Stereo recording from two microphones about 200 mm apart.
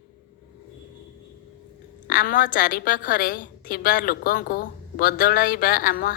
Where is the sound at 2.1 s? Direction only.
45° left (ahead or behind).